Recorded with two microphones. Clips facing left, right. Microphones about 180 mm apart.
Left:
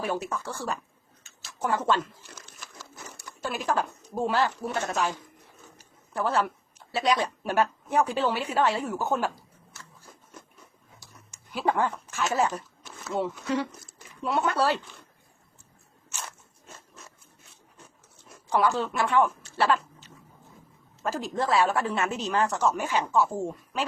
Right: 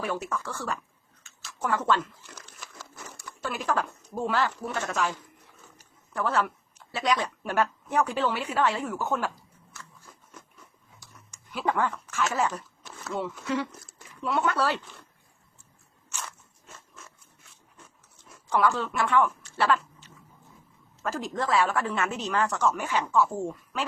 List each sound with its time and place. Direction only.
0.0 s a woman's voice: 30° left (ahead or behind)
3.2 s speech: 30° left (ahead or behind)
6.1 s a woman's voice: 30° left (ahead or behind)
11.0 s a sound: 30° left (ahead or behind)
13.1 s speech: 35° left (ahead or behind)
18.5 s speech: 30° left (ahead or behind)
21.0 s a woman's voice: 30° left (ahead or behind)
23.4 s speech: 15° left (ahead or behind)